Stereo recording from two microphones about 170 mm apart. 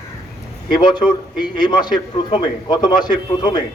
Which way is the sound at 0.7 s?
25° left (ahead or behind).